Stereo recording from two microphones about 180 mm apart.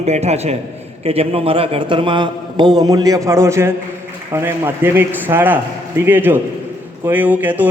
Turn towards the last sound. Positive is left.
turn(degrees=-10)  # may be behind; listen again after turning